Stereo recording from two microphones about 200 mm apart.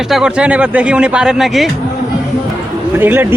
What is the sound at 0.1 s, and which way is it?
Speech, 5° right (ahead or behind).